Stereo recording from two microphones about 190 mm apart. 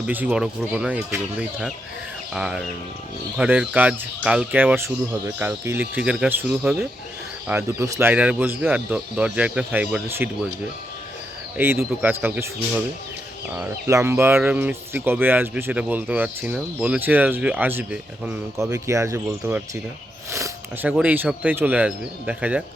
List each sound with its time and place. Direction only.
0.1 s speech: 10° right (ahead or behind)
11.5 s speech: 10° right (ahead or behind)